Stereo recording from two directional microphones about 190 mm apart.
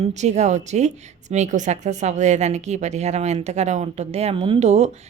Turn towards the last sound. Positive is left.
turn(degrees=-35)  # may be behind; listen again after turning